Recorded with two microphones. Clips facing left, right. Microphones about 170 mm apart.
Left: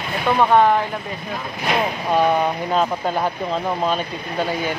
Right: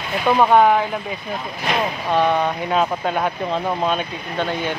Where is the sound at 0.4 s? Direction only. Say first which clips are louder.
Right 1 dB; 5° right (ahead or behind).